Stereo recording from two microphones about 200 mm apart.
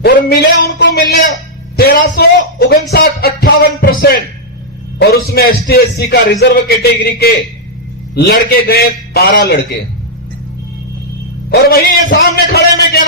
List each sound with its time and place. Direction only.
0.0 s a sound: 55° left (ahead or behind)
1.7 s a man's voice: 50° left (ahead or behind)
11.7 s a man's voice: 50° left (ahead or behind)